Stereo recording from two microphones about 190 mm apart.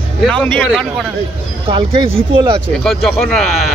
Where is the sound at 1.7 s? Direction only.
30° right (ahead or behind).